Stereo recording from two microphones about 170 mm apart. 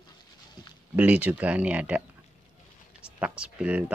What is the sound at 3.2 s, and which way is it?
Speech, 5° right (ahead or behind).